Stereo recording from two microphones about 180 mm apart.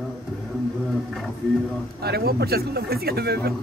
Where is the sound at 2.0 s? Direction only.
60° right (ahead or behind).